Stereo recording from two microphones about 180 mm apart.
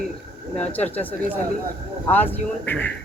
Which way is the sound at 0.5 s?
10° left (ahead or behind).